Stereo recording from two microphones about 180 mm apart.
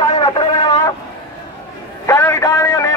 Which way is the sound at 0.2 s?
20° left (ahead or behind).